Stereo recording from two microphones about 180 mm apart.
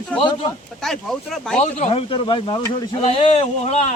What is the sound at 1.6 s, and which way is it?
Speech, 40° left (ahead or behind).